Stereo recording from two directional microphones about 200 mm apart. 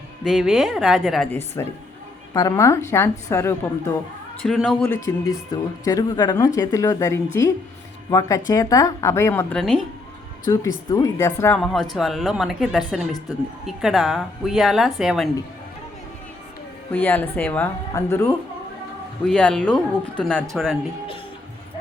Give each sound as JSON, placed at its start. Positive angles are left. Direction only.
{"t": 0.3, "sound": "speech", "side_deg": 0}
{"t": 4.4, "sound": "speech", "side_deg": 0}
{"t": 8.4, "sound": "speech", "side_deg": 15}
{"t": 10.4, "sound": "speech", "side_deg": 15}
{"t": 11.5, "sound": "speech", "side_deg": 0}
{"t": 16.9, "sound": "speech", "side_deg": 10}